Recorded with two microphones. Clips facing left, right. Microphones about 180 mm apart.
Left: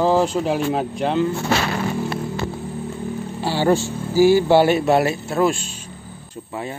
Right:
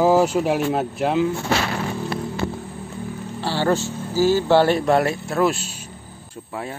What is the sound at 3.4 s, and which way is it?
Speech, 15° left (ahead or behind).